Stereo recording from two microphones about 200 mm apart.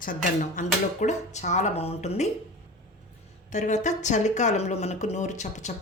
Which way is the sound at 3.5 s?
35° left (ahead or behind).